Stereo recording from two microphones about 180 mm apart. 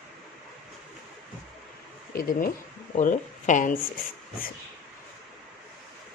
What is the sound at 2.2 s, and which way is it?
Speech, 50° left (ahead or behind).